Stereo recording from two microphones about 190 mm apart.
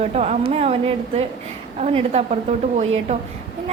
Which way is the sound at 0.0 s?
35° right (ahead or behind).